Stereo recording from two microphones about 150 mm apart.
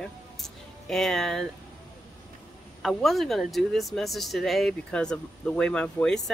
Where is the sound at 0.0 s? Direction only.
5° left (ahead or behind).